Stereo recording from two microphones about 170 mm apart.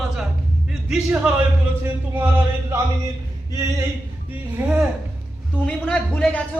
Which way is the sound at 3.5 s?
20° right (ahead or behind).